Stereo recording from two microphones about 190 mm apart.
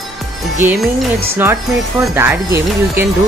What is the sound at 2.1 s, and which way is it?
Speech, 10° right (ahead or behind).